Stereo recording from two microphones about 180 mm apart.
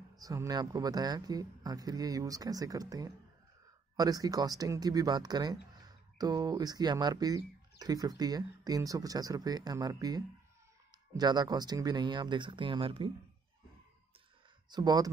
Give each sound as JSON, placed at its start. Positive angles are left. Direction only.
{"t": 0.2, "sound": "speech", "side_deg": -20}
{"t": 14.7, "sound": "speech", "side_deg": -25}